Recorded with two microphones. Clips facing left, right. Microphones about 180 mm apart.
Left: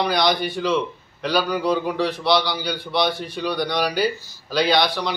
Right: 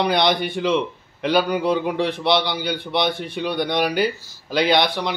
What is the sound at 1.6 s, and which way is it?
A man's voice, 20° right (ahead or behind).